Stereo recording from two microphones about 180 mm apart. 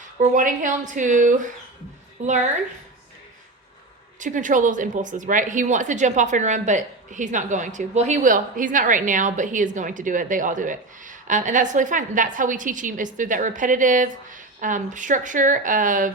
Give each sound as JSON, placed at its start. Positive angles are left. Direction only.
{"t": 0.2, "sound": "speech", "side_deg": -45}
{"t": 4.2, "sound": "speech", "side_deg": -45}